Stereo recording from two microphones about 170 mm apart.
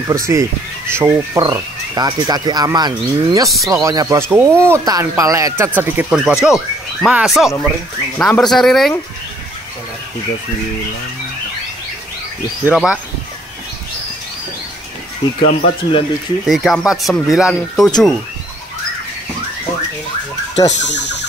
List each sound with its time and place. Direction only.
0.1 s speech: 20° right (ahead or behind)
6.0 s speech: centre (ahead or behind)
12.6 s speech: 5° right (ahead or behind)
15.4 s speech: 35° left (ahead or behind)
16.4 s speech: centre (ahead or behind)
20.7 s speech: 90° left